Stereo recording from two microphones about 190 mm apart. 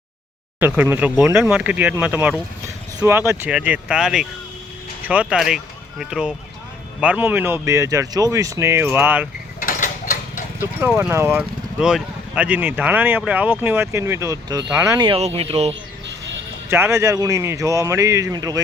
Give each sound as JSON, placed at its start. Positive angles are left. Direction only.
{"t": 0.6, "sound": "speech", "side_deg": -10}
{"t": 9.6, "sound": "a sound", "side_deg": 45}
{"t": 10.6, "sound": "speech", "side_deg": -10}
{"t": 16.6, "sound": "speech", "side_deg": -15}